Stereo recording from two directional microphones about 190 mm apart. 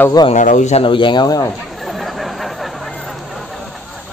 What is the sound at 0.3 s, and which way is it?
Speech, 40° left (ahead or behind).